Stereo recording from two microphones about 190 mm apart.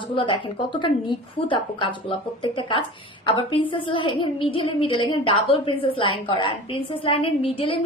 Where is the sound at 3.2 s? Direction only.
25° left (ahead or behind).